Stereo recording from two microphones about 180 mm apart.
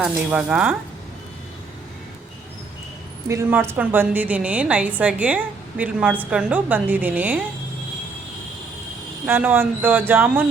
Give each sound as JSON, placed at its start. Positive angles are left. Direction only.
{"t": 0.0, "sound": "a woman's voice", "side_deg": -10}
{"t": 3.2, "sound": "a woman's voice", "side_deg": -15}
{"t": 9.2, "sound": "a woman's voice", "side_deg": -10}